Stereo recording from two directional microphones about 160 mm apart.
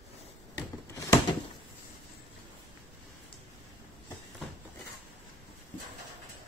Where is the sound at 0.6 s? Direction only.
20° left (ahead or behind).